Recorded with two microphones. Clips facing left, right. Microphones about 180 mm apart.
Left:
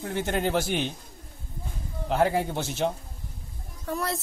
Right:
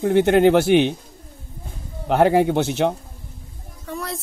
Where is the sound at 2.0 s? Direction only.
70° right (ahead or behind).